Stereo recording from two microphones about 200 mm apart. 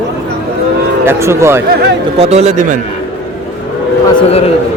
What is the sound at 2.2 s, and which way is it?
Speech, 30° right (ahead or behind).